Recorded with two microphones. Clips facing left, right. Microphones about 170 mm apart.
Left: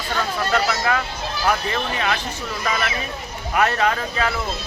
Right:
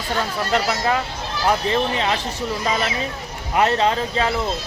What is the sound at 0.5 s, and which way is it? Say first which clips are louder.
Speech: right 1 dB; 25° right (ahead or behind).